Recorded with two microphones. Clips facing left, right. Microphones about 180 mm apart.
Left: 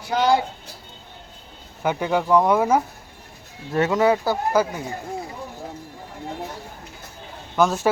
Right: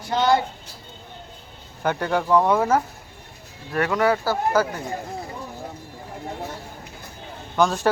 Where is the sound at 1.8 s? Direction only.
10° left (ahead or behind).